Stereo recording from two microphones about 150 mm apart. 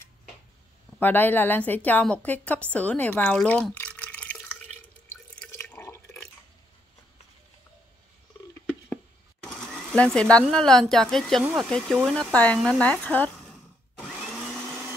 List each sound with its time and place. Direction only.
0.9 s a woman's voice: 10° left (ahead or behind)
5.1 s drip: 10° left (ahead or behind)
8.6 s patter: 10° left (ahead or behind)
9.7 s sewing machine: 5° left (ahead or behind)
10.4 s speech: 5° left (ahead or behind)